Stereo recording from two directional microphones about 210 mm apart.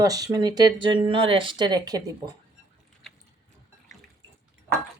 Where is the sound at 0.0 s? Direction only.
15° right (ahead or behind).